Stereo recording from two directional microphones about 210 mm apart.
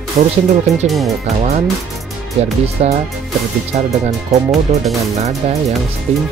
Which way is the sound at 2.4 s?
30° right (ahead or behind).